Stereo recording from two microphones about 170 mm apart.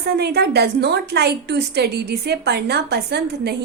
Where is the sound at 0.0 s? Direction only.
75° right (ahead or behind).